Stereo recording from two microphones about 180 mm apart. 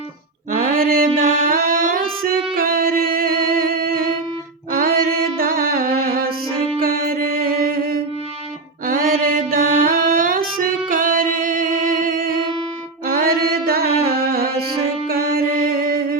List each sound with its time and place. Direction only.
0.5 s mantra: 50° right (ahead or behind)
2.6 s music: 55° right (ahead or behind)
5.4 s music: 55° right (ahead or behind)
6.8 s mantra: 55° right (ahead or behind)
10.6 s music: 50° right (ahead or behind)
13.1 s a sound: 55° right (ahead or behind)
15.0 s music: 60° right (ahead or behind)